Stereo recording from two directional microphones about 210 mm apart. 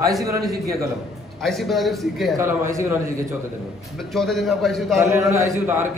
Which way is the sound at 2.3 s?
15° right (ahead or behind).